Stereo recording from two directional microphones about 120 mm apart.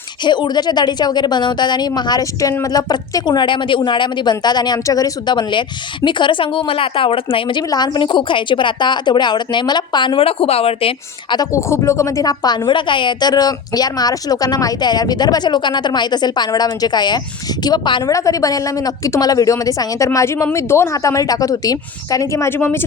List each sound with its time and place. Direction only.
0.3 s a woman's voice: 40° left (ahead or behind)
11.3 s a woman's voice: 25° left (ahead or behind)